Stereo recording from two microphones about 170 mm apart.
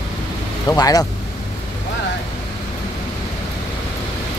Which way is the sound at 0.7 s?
20° left (ahead or behind).